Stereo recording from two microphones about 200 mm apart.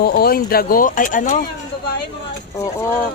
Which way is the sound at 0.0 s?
50° left (ahead or behind).